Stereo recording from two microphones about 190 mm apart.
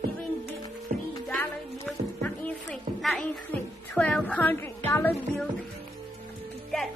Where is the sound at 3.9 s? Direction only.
5° left (ahead or behind).